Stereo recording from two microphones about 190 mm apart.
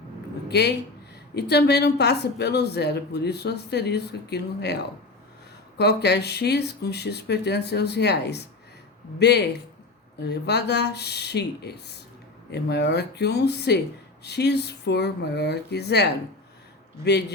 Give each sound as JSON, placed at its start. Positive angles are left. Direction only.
{"t": 0.4, "sound": "a woman's voice", "side_deg": 60}